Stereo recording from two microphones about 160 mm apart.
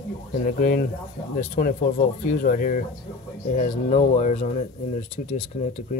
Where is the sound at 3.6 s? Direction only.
50° left (ahead or behind).